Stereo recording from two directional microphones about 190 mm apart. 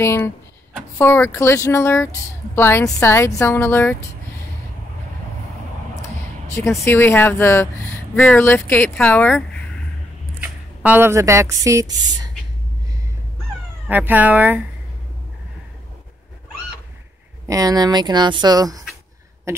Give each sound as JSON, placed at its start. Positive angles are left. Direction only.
{"t": 0.0, "sound": "a woman's voice", "side_deg": 10}
{"t": 6.5, "sound": "a woman's voice", "side_deg": 15}
{"t": 10.4, "sound": "speech", "side_deg": -10}
{"t": 13.8, "sound": "speech", "side_deg": -10}
{"t": 17.5, "sound": "speech", "side_deg": -20}